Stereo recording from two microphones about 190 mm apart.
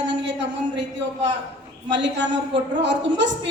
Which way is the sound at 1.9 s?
65° right (ahead or behind).